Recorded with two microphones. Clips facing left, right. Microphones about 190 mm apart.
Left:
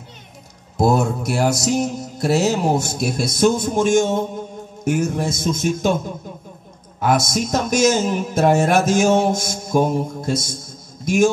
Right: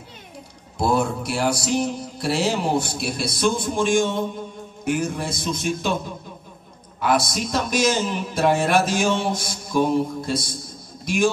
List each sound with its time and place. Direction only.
0.7 s speech: 45° left (ahead or behind)